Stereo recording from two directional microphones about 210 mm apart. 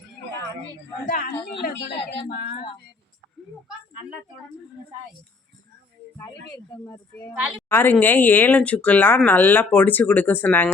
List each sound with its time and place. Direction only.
1.0 s a woman's voice: 45° left (ahead or behind)
6.7 s speech: 15° left (ahead or behind)